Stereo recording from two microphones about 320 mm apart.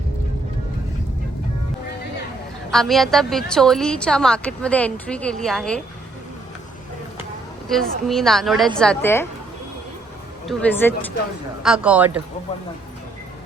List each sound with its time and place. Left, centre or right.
2.7 s a woman's voice: centre
7.7 s a woman's voice: centre
10.4 s a woman's voice: centre